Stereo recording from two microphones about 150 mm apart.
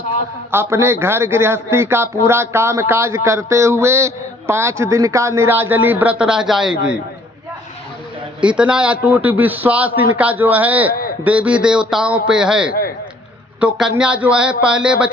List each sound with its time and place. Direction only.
0.5 s a man's voice: 15° right (ahead or behind)
8.4 s a man's voice: 5° right (ahead or behind)